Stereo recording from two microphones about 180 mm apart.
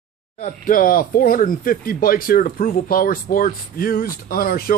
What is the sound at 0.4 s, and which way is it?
Speech, 50° left (ahead or behind).